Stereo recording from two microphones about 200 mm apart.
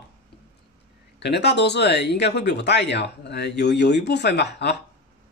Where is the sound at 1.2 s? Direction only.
55° left (ahead or behind).